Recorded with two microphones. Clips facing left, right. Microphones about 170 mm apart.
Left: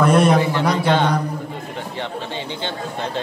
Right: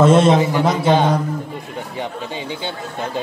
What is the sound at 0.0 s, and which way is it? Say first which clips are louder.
A man's voice: right 3 dB; 25° right (ahead or behind).